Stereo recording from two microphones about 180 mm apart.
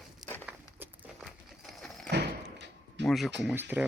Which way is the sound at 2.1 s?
70° right (ahead or behind).